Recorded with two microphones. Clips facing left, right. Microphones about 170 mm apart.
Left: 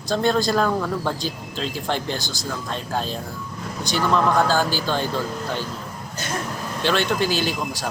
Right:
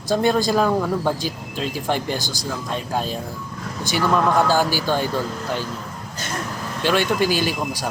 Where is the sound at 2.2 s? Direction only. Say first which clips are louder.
Right 2 dB; 20° left (ahead or behind).